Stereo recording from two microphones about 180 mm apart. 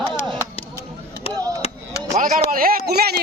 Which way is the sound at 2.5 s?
55° right (ahead or behind).